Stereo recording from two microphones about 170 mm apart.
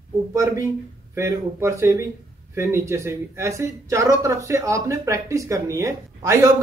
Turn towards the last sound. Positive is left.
turn(degrees=-20)  # may be behind; listen again after turning